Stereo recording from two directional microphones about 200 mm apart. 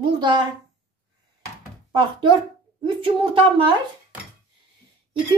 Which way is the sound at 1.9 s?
25° right (ahead or behind).